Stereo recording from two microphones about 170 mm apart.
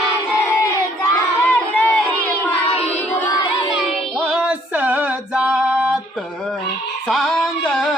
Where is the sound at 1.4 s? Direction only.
10° left (ahead or behind).